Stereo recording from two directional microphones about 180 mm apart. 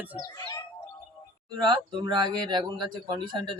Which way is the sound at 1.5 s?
25° right (ahead or behind).